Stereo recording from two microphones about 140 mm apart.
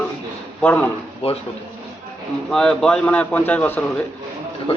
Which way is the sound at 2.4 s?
5° left (ahead or behind).